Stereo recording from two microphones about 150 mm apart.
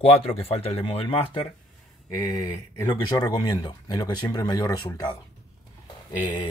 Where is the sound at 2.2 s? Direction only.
25° left (ahead or behind).